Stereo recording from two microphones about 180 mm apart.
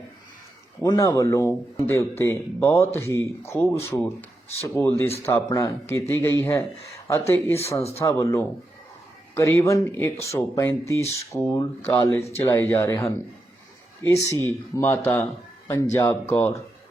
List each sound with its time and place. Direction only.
0.8 s speech: 15° left (ahead or behind)
7.8 s speech: 35° left (ahead or behind)
8.0 s speech: 15° left (ahead or behind)
14.8 s speech: 15° left (ahead or behind)